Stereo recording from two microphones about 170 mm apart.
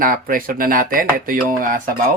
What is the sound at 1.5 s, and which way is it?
Dishes, 55° right (ahead or behind).